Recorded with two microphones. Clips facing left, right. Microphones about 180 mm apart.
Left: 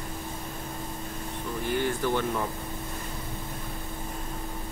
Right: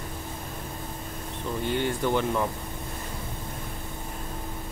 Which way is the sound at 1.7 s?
20° right (ahead or behind).